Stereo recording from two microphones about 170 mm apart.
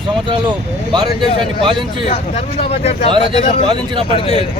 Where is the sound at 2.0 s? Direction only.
35° left (ahead or behind).